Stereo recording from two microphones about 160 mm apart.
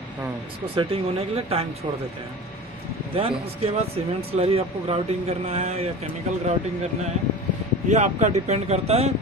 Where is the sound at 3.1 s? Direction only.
40° right (ahead or behind).